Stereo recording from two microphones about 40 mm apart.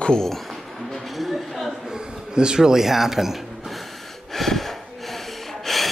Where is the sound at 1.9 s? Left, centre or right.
Centre.